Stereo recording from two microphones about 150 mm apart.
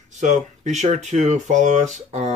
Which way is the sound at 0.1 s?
50° right (ahead or behind).